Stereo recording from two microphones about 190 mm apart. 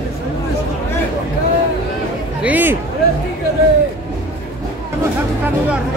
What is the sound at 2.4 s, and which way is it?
Speech, 10° right (ahead or behind).